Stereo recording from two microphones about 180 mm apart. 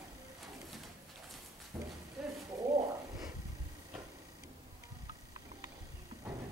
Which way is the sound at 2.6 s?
20° right (ahead or behind).